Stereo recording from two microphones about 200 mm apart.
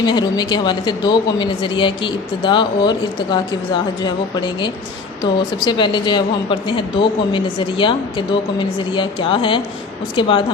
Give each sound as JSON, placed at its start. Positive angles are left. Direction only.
{"t": 0.0, "sound": "a woman's voice", "side_deg": 20}
{"t": 5.2, "sound": "a woman's voice", "side_deg": 25}